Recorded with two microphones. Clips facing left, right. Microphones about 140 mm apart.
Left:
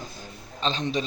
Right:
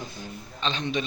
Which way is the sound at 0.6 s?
40° left (ahead or behind).